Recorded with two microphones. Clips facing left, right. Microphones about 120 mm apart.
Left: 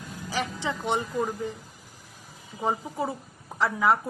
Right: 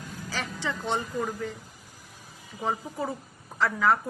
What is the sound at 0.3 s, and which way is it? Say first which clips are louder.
A woman's voice: left 3 dB; 20° left (ahead or behind).